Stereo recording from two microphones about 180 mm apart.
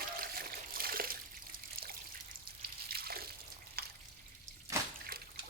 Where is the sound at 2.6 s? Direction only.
55° right (ahead or behind).